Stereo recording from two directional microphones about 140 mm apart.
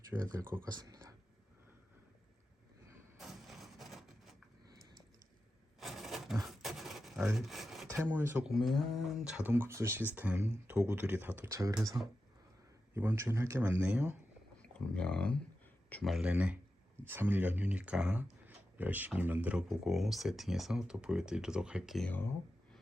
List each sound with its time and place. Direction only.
0.2 s speech: 20° right (ahead or behind)
3.2 s a sound: centre (ahead or behind)
5.8 s a sound: centre (ahead or behind)
7.3 s speech: centre (ahead or behind)
7.9 s speech: 15° right (ahead or behind)
8.4 s speech: centre (ahead or behind)
14.6 s speech: 5° left (ahead or behind)
16.0 s speech: 5° right (ahead or behind)
22.0 s speech: 15° left (ahead or behind)